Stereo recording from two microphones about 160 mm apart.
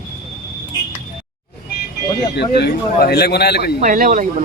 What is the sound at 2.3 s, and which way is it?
A man's voice, 90° left.